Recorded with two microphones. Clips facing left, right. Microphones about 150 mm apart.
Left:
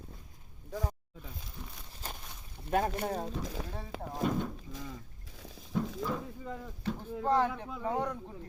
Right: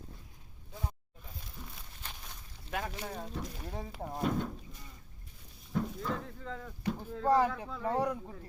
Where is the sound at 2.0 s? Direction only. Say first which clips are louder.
Left 6 dB; 40° left (ahead or behind).